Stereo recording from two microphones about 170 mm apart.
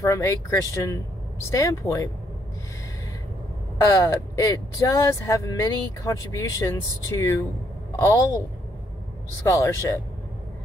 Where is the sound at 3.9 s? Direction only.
20° left (ahead or behind).